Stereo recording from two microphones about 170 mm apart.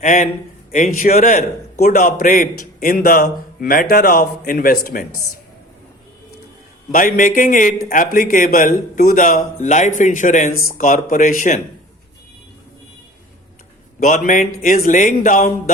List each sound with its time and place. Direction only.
0.0 s a man's voice: 45° left (ahead or behind)
6.9 s a man's voice: 50° left (ahead or behind)
14.0 s a man's voice: 50° left (ahead or behind)